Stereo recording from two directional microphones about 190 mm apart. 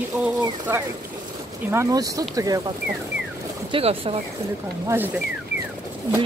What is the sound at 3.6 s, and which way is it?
Speech, 30° right (ahead or behind).